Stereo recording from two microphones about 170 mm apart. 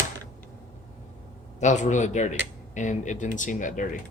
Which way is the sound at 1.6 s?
45° left (ahead or behind).